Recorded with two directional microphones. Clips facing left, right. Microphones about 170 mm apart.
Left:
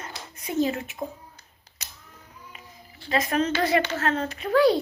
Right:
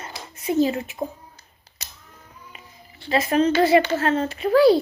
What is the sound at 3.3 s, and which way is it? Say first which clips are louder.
Speech: right 7 dB; 30° right (ahead or behind).